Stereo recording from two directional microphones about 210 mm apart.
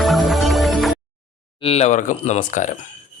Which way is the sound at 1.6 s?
30° left (ahead or behind).